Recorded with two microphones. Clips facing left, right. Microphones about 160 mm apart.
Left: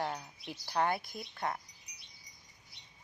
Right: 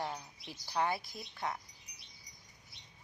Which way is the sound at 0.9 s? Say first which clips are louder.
Left 3 dB; 55° left (ahead or behind).